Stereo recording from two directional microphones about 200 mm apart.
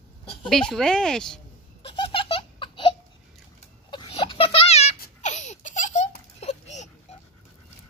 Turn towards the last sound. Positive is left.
turn(degrees=35)  # may be behind; listen again after turning